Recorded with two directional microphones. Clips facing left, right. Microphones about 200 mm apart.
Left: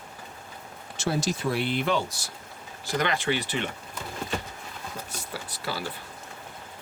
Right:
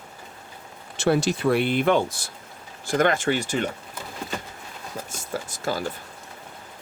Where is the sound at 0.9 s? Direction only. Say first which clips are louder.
Right 6 dB; 65° right (ahead or behind); by 3.6 s 45° right (ahead or behind).